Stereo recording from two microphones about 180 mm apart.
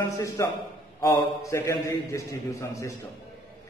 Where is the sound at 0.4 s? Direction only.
15° left (ahead or behind).